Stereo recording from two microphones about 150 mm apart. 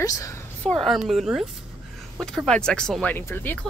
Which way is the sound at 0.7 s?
Centre (ahead or behind).